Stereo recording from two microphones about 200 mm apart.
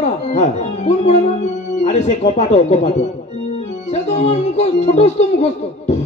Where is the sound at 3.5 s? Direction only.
35° left (ahead or behind).